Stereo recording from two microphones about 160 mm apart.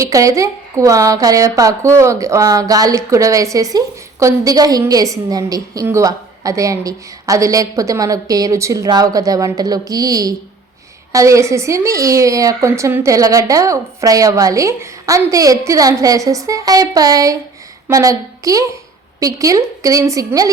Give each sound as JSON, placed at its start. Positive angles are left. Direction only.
{"t": 0.0, "sound": "a woman's voice", "side_deg": -20}